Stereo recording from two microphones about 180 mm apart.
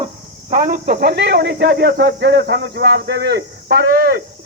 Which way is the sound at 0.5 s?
50° right (ahead or behind).